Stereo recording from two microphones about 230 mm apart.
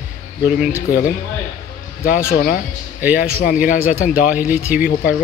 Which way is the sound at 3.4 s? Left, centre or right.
Left.